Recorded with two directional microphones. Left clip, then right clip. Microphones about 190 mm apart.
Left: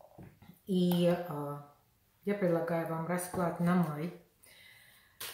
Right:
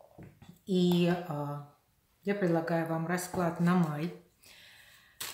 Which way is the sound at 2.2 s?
30° right (ahead or behind).